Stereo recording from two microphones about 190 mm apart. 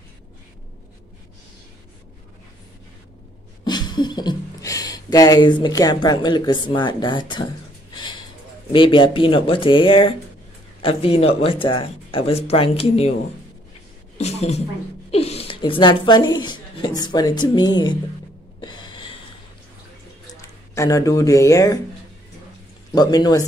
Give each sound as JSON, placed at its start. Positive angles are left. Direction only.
{"t": 3.6, "sound": "speech", "side_deg": 25}
{"t": 7.9, "sound": "a sound", "side_deg": 25}
{"t": 8.7, "sound": "speech", "side_deg": 25}
{"t": 14.1, "sound": "a sound", "side_deg": 35}
{"t": 15.0, "sound": "a woman's voice", "side_deg": 30}
{"t": 20.7, "sound": "speech", "side_deg": 15}
{"t": 22.9, "sound": "speech", "side_deg": 20}